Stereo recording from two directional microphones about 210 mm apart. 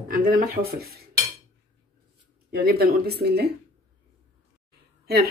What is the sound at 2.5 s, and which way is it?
Speech, 45° right (ahead or behind).